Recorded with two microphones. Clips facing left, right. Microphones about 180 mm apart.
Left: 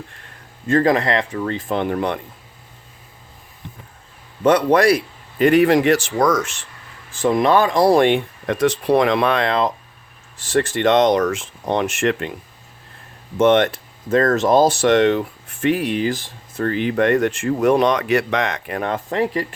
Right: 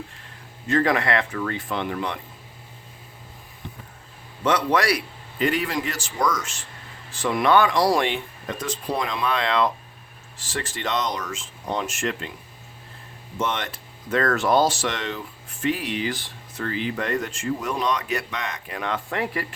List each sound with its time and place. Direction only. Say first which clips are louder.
0.8 s speech: left 5 dB; 40° left (ahead or behind)
1.0 s speech: left 4 dB; 25° left (ahead or behind)
1.7 s speech: left 10 dB; 45° left (ahead or behind)
4.4 s speech: left 7 dB; 55° left (ahead or behind)
7.3 s speech: left 2 dB; 45° left (ahead or behind)
10.7 s speech: left 12 dB; 60° left (ahead or behind)
13.4 s speech: left 13 dB; 60° left (ahead or behind)
18.8 s speech: left 6 dB; 40° left (ahead or behind)